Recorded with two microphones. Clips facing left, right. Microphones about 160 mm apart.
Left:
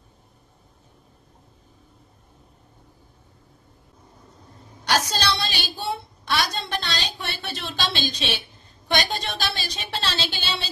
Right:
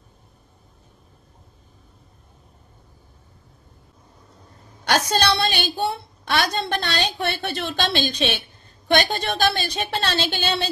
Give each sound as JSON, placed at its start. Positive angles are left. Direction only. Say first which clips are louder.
{"t": 4.8, "sound": "a woman's voice", "louder": "right 4 dB", "side_deg": -60}